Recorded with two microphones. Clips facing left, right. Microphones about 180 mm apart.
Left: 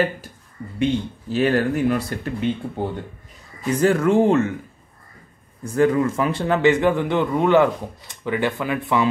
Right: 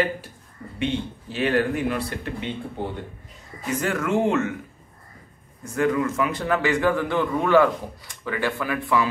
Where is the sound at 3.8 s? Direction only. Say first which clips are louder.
Left 7 dB; 30° left (ahead or behind).